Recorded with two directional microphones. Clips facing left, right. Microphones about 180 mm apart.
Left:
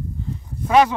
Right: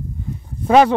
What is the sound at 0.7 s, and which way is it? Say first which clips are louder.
Speech: right 4 dB; 35° right (ahead or behind).